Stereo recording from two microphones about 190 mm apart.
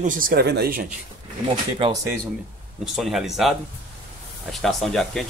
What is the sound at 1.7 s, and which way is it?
Speech, 25° right (ahead or behind).